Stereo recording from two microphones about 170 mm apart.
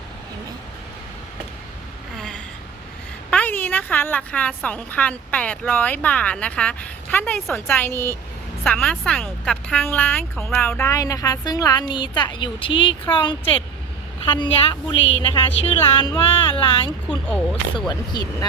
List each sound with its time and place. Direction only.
2.1 s a sound: 5° left (ahead or behind)
3.2 s a woman's voice: 10° left (ahead or behind); by 14.9 s 25° left (ahead or behind)
15.6 s a sound: 35° left (ahead or behind)
16.0 s a woman's voice: 25° left (ahead or behind)
17.1 s a woman's voice: 5° left (ahead or behind)
17.7 s a woman's voice: 25° left (ahead or behind)